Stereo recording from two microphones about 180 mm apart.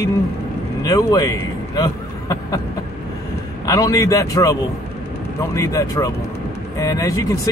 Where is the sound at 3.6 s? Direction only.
20° left (ahead or behind).